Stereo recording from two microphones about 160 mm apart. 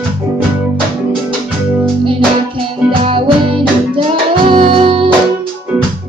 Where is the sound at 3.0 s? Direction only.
35° right (ahead or behind).